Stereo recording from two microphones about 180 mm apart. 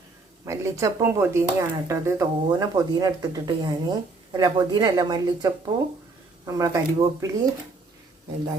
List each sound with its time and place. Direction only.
0.4 s speech: 15° right (ahead or behind)